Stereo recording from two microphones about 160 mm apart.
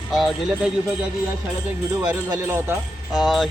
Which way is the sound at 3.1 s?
Centre (ahead or behind).